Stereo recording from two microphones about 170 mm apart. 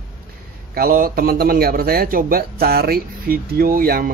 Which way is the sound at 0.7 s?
60° right (ahead or behind).